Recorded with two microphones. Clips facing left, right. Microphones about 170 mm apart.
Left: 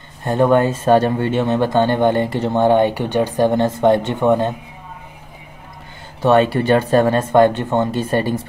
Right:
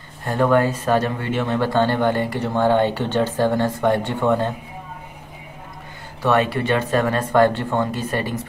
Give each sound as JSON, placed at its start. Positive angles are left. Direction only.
{"t": 0.2, "sound": "speech", "side_deg": 20}
{"t": 6.2, "sound": "speech", "side_deg": 25}